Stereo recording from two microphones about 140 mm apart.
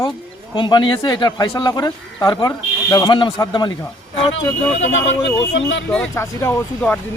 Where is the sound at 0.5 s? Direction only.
35° left (ahead or behind).